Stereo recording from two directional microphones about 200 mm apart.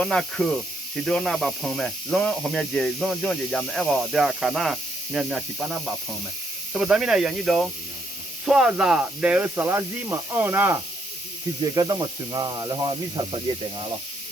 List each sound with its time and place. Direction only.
0.0 s speech: 5° left (ahead or behind); by 13.8 s 25° right (ahead or behind)